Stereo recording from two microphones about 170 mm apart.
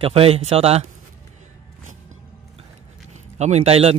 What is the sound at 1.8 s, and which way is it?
Music, 45° right (ahead or behind).